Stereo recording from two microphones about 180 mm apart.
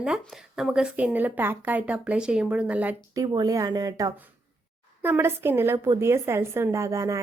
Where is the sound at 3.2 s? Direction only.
20° right (ahead or behind).